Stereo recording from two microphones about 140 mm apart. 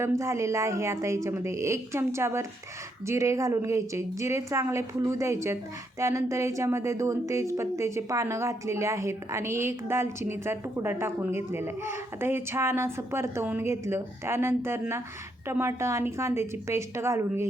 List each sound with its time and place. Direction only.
0.0 s a woman's voice: 20° right (ahead or behind)